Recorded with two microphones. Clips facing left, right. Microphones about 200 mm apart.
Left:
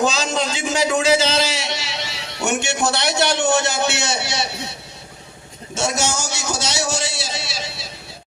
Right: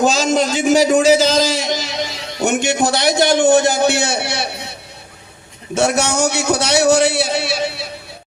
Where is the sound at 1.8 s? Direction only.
75° left (ahead or behind).